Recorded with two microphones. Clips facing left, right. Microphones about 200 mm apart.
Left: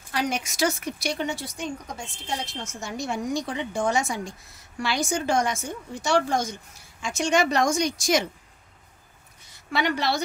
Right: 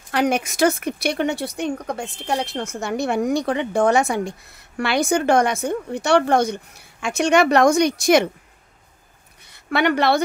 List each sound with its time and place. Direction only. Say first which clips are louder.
0.1 s speech: right 8 dB; 60° right (ahead or behind)
9.4 s a woman's voice: right 6 dB; 60° right (ahead or behind)